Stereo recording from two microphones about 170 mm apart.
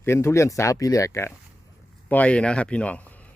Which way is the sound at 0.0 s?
15° left (ahead or behind).